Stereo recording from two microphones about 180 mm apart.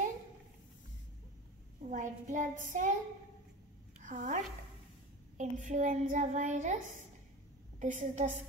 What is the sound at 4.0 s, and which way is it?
Speech, 45° right (ahead or behind).